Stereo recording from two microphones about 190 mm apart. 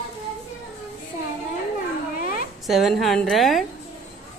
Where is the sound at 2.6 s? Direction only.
Centre (ahead or behind).